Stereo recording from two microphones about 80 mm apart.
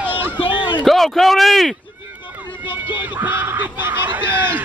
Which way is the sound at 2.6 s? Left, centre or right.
Left.